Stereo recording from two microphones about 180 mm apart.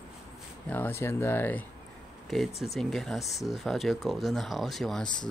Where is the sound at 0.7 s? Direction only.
10° left (ahead or behind).